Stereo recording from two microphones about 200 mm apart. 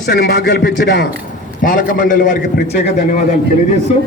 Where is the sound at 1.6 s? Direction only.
45° left (ahead or behind).